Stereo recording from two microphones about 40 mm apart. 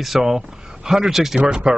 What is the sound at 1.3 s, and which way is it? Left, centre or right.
Speech, right.